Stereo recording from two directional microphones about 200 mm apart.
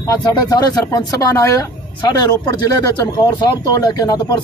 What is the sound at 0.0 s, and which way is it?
Speech, 20° left (ahead or behind).